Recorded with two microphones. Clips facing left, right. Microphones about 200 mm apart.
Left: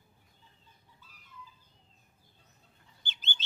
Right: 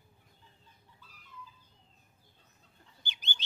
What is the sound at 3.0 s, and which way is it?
Bird, 15° right (ahead or behind).